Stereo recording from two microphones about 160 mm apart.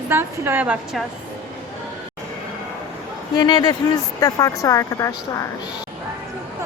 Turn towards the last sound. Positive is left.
turn(degrees=20)  # may be behind; listen again after turning